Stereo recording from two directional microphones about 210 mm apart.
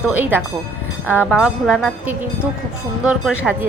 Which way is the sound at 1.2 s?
5° right (ahead or behind).